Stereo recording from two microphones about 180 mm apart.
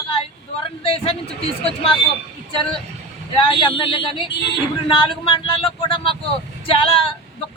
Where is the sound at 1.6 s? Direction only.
30° left (ahead or behind).